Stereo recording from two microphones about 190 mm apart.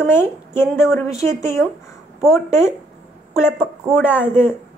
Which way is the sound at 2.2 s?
15° left (ahead or behind).